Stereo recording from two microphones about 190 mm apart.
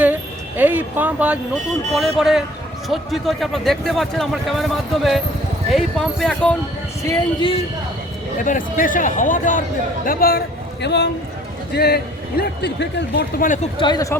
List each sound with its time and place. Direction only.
0.0 s a sound: 10° right (ahead or behind)
1.9 s a man's voice: centre (ahead or behind)
7.0 s speech: 20° left (ahead or behind)
8.4 s a man's voice: 45° left (ahead or behind); by 13.2 s 65° left (ahead or behind)
13.4 s speech: 40° left (ahead or behind)
13.7 s speech: 20° left (ahead or behind)